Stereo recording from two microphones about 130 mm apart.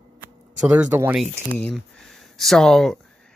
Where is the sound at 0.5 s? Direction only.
10° right (ahead or behind).